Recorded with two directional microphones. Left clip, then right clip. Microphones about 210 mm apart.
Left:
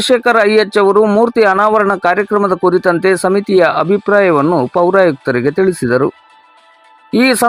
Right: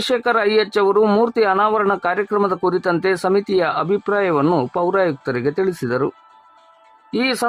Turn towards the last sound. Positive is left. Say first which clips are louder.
# left 8 dB
turn(degrees=25)  # may be behind; listen again after turning